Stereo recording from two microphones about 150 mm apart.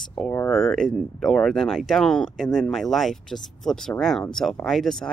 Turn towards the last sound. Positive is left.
turn(degrees=5)  # may be behind; listen again after turning